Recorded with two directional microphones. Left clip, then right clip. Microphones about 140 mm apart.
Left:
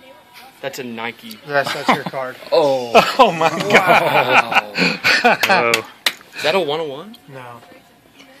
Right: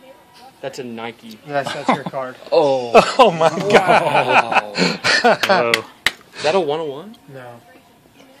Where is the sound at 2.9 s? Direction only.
70° right (ahead or behind).